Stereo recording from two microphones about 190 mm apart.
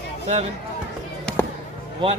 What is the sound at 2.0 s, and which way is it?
Speech, 25° right (ahead or behind).